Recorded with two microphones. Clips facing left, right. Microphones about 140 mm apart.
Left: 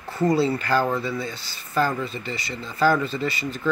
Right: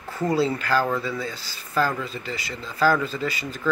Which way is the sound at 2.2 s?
5° right (ahead or behind).